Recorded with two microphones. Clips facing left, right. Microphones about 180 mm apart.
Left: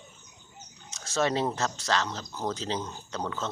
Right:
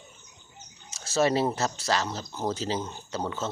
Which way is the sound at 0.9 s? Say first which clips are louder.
Right 3 dB; 5° right (ahead or behind).